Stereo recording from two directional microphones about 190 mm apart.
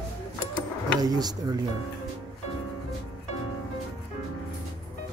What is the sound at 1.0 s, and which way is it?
Speech, 20° right (ahead or behind).